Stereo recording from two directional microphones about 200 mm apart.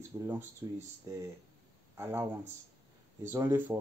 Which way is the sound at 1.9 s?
15° right (ahead or behind).